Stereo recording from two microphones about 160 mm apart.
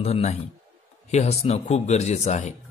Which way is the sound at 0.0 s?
40° left (ahead or behind).